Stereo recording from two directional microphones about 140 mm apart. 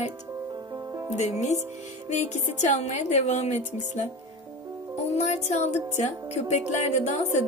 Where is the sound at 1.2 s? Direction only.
55° left (ahead or behind).